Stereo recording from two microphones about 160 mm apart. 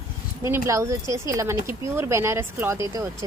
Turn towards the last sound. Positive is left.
turn(degrees=-20)  # may be behind; listen again after turning